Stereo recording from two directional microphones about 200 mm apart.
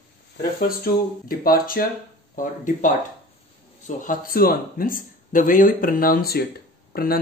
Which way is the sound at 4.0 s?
45° left (ahead or behind).